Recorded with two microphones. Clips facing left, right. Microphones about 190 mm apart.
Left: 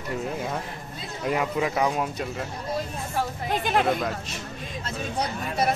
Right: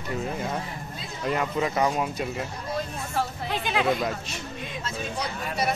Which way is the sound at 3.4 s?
50° left (ahead or behind).